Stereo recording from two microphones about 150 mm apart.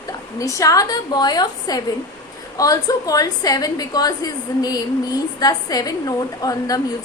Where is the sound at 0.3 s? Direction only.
20° left (ahead or behind).